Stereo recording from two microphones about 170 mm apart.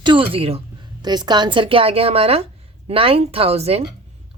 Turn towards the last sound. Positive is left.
turn(degrees=-35)  # may be behind; listen again after turning